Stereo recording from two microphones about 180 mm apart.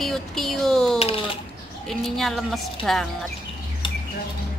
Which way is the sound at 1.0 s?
35° left (ahead or behind).